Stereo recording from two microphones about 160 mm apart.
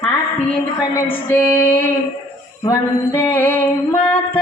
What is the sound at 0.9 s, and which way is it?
A woman's voice, 15° left (ahead or behind).